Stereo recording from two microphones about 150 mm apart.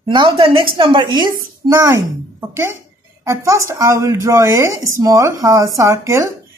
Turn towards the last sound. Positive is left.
turn(degrees=-20)  # may be behind; listen again after turning